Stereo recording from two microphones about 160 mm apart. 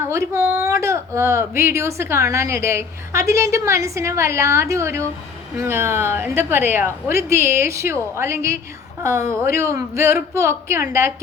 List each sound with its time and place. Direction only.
0.0 s speech: 15° right (ahead or behind)